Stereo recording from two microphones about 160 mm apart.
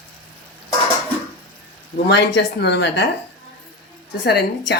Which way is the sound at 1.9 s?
90° left.